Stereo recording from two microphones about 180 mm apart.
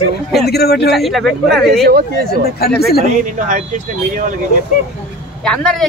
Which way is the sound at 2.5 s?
60° left (ahead or behind).